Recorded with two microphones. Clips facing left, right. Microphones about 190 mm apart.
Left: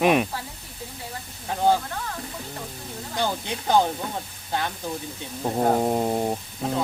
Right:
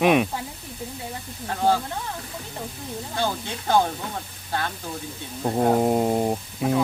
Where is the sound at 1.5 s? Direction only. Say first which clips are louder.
Left 1 dB; 15° left (ahead or behind).